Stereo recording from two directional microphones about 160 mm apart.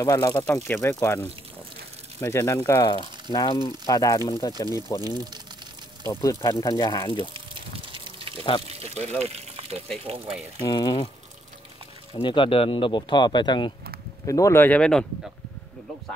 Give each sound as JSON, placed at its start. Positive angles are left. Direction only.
{"t": 0.0, "sound": "speech", "side_deg": 20}
{"t": 5.0, "sound": "speech", "side_deg": -25}
{"t": 6.0, "sound": "speech", "side_deg": 20}
{"t": 7.3, "sound": "gush", "side_deg": -35}
{"t": 8.6, "sound": "water", "side_deg": -40}
{"t": 9.2, "sound": "speech", "side_deg": -40}
{"t": 10.7, "sound": "speech", "side_deg": 25}
{"t": 12.1, "sound": "speech", "side_deg": 30}